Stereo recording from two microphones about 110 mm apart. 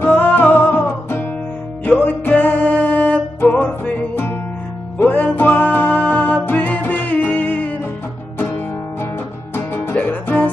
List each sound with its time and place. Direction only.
0.0 s music: 15° left (ahead or behind)
9.9 s music: 15° left (ahead or behind)